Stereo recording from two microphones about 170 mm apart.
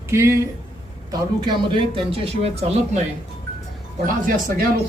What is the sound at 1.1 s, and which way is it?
Speech, 25° right (ahead or behind).